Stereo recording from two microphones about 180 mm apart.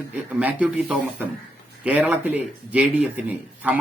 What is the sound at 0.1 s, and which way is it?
Speech, 10° right (ahead or behind).